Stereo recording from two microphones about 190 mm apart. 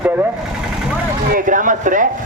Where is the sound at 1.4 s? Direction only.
45° right (ahead or behind).